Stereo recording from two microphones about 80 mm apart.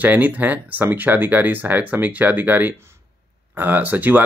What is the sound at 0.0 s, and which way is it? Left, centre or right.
Speech, right.